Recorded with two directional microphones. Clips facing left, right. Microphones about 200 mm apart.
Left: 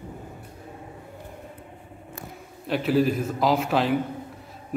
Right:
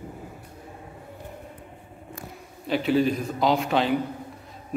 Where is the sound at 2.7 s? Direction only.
Centre (ahead or behind).